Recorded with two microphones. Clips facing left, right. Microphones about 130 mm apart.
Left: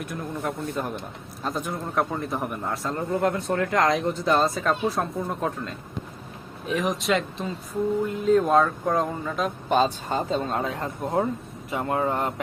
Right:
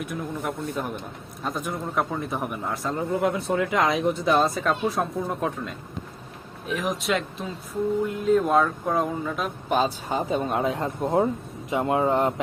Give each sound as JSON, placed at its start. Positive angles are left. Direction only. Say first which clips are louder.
{"t": 0.0, "sound": "a man's voice", "louder": "even", "side_deg": 0}